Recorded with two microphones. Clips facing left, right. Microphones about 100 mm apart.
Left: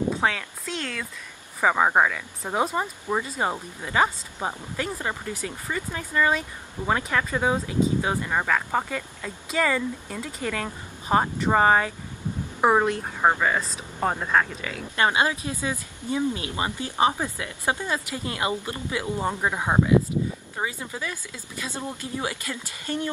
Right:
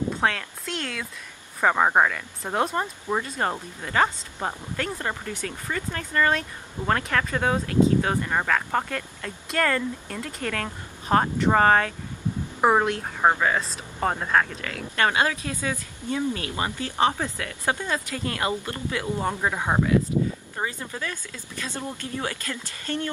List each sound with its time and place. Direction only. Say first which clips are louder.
0.1 s a woman's voice: even; centre (ahead or behind)
15.0 s speech: even; 20° left (ahead or behind)